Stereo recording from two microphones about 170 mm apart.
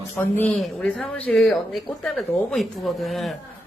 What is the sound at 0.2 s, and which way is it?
A man's voice, 10° left (ahead or behind).